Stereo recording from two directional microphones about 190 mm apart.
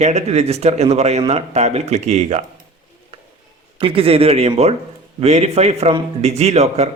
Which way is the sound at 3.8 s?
30° right (ahead or behind).